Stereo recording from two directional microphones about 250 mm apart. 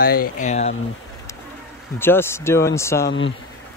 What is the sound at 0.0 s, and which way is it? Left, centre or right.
Speech, left.